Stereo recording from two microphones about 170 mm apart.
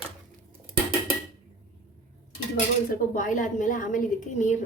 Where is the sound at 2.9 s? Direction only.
50° left (ahead or behind).